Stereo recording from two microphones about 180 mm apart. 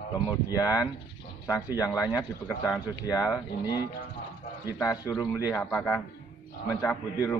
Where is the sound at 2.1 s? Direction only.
5° right (ahead or behind).